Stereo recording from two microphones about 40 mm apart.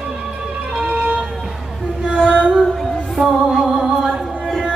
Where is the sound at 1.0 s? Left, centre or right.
Right.